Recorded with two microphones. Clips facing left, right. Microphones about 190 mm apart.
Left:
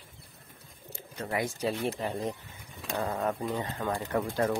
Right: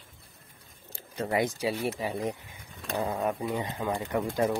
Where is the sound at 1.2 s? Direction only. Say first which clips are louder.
Right 3 dB; 20° right (ahead or behind).